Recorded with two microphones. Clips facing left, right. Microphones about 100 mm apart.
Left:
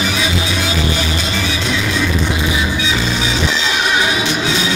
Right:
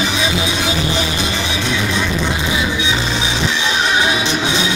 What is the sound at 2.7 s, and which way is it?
Music, 20° right (ahead or behind).